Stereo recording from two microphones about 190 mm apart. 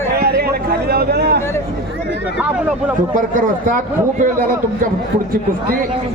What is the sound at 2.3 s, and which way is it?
Speech, 5° right (ahead or behind).